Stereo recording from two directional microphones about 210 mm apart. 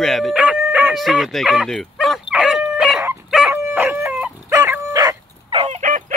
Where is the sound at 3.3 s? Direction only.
Centre (ahead or behind); by 5.6 s 15° right (ahead or behind).